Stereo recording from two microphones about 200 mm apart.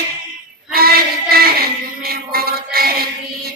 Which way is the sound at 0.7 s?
50° right (ahead or behind).